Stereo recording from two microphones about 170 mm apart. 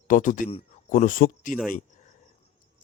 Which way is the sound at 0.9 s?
55° left (ahead or behind).